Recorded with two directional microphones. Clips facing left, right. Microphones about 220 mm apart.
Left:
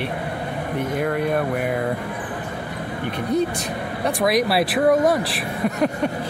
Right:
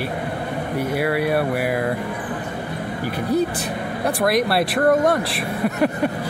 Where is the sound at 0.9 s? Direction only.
5° right (ahead or behind).